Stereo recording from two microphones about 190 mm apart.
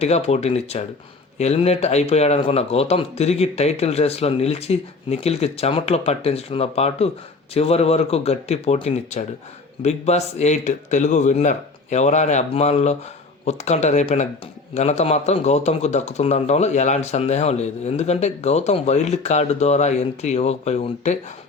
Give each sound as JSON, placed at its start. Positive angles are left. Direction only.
{"t": 0.0, "sound": "a man's voice", "side_deg": 35}